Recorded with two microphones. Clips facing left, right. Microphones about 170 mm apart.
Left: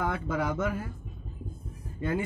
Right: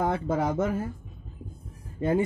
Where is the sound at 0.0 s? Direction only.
35° right (ahead or behind).